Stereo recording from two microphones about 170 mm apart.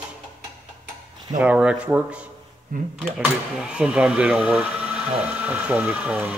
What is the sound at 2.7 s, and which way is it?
Speech, 50° right (ahead or behind).